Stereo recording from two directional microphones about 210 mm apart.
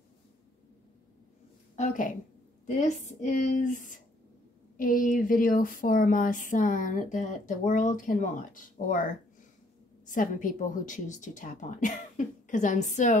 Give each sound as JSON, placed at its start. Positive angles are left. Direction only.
{"t": 1.8, "sound": "speech", "side_deg": 40}